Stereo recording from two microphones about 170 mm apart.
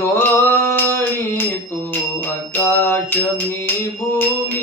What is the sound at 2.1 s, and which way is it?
Music, 15° left (ahead or behind).